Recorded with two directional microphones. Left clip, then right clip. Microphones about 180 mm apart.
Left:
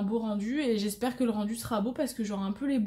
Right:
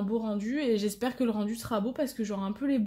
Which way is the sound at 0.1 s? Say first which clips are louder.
Right 1 dB; 30° right (ahead or behind).